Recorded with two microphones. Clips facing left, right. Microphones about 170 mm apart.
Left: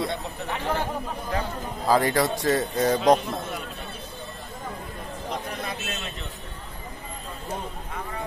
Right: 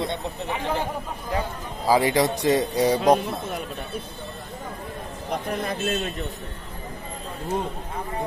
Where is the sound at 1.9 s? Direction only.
15° right (ahead or behind).